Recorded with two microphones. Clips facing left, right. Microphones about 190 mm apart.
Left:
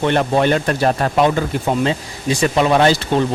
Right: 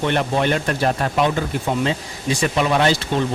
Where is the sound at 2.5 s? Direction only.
40° left (ahead or behind).